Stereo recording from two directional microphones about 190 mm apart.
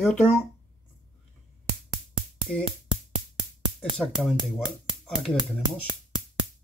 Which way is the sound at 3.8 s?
Centre (ahead or behind).